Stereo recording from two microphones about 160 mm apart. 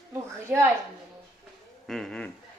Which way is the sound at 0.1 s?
15° right (ahead or behind).